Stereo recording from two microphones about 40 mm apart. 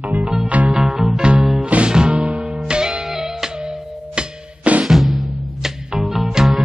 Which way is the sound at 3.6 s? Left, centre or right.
Right.